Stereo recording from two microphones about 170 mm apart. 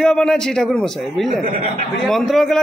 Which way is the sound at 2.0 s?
Centre (ahead or behind).